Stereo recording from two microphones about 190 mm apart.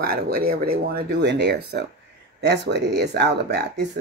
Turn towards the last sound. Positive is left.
turn(degrees=-60)  # may be behind; listen again after turning